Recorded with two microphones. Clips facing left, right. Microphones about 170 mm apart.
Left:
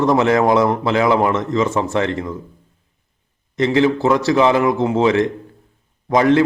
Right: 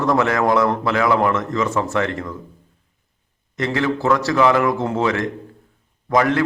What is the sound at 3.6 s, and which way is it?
A man's voice, 20° left (ahead or behind).